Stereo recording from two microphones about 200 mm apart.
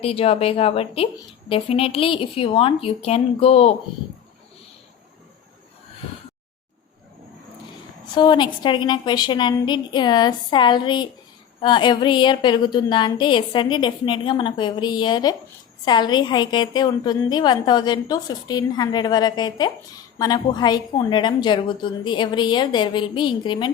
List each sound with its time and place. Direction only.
0.0 s a woman's voice: 30° left (ahead or behind)
8.1 s a woman's voice: 20° left (ahead or behind)